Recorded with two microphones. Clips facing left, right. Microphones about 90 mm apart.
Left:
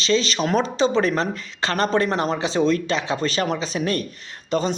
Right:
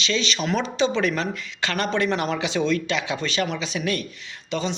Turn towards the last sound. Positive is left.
turn(degrees=40)  # may be behind; listen again after turning